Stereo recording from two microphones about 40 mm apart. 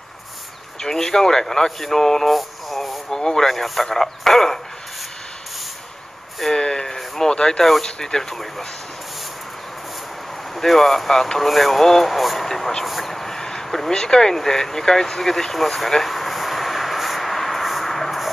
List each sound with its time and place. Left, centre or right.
0.7 s speech: centre
2.3 s radio: centre
3.1 s speech: centre
6.4 s a sound: centre
7.8 s speech: centre
10.5 s speech: centre
12.4 s a sound: centre